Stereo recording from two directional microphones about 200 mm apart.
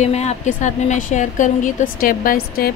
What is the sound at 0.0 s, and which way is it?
A woman's voice, 35° left (ahead or behind).